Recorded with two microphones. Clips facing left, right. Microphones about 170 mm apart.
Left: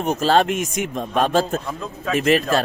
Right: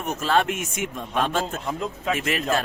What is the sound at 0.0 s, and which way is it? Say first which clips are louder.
Speech: left 5 dB; 30° left (ahead or behind).